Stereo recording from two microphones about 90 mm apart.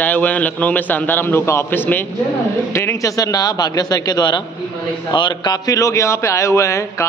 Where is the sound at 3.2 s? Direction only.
45° left (ahead or behind).